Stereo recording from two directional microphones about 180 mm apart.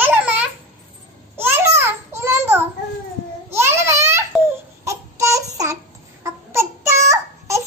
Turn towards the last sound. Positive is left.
turn(degrees=-15)  # may be behind; listen again after turning